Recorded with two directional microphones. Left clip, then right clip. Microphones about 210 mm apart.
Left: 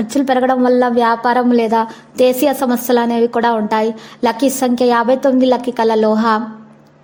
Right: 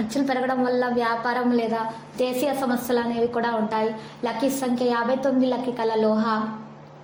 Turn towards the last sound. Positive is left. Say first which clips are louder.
# left 9 dB
turn(degrees=50)  # may be behind; listen again after turning